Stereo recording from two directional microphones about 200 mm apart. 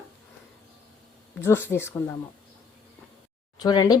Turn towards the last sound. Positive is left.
turn(degrees=20)  # may be behind; listen again after turning